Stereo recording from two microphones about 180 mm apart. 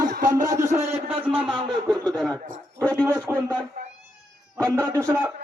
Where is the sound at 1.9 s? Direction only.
5° left (ahead or behind).